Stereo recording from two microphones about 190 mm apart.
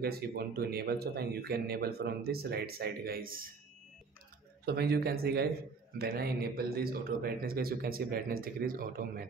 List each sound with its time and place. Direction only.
0.0 s speech: 55° right (ahead or behind)
4.6 s speech: 55° right (ahead or behind)